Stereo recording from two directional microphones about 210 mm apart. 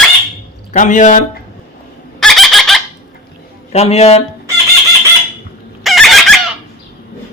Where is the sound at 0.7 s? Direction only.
35° left (ahead or behind).